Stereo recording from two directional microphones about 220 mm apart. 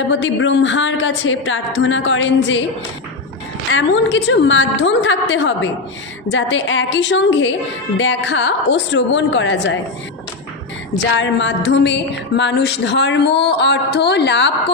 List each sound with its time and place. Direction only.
0.1 s speech: 55° left (ahead or behind)
3.7 s speech: 55° left (ahead or behind)
11.1 s speech: 55° left (ahead or behind)